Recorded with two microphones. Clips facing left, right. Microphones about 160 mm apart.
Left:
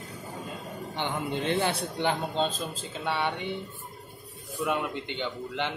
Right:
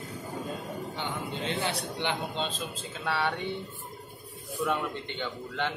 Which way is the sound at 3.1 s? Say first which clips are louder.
Even; 20° left (ahead or behind).